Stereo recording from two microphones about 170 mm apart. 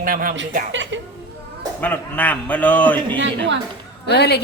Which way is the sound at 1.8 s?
10° left (ahead or behind).